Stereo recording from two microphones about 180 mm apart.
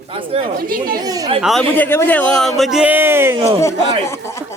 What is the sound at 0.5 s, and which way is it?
Speech, 55° right (ahead or behind).